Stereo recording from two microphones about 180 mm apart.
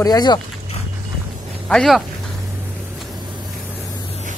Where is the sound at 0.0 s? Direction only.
20° left (ahead or behind).